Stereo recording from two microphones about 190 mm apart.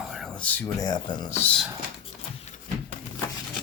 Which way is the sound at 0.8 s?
20° left (ahead or behind).